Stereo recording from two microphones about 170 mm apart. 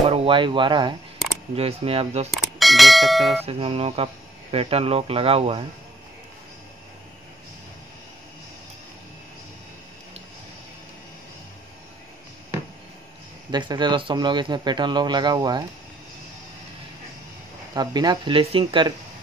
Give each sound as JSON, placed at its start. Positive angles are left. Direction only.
{"t": 0.1, "sound": "speech", "side_deg": -30}
{"t": 2.3, "sound": "speech", "side_deg": 0}
{"t": 3.4, "sound": "speech", "side_deg": -35}
{"t": 13.5, "sound": "speech", "side_deg": -25}
{"t": 17.7, "sound": "speech", "side_deg": -25}